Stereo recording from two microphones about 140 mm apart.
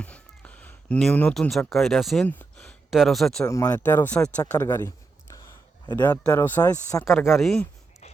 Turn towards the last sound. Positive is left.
turn(degrees=0)  # may be behind; listen again after turning